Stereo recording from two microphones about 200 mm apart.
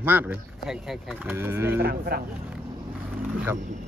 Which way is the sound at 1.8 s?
50° right (ahead or behind).